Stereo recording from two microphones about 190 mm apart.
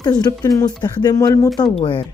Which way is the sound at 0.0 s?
20° left (ahead or behind).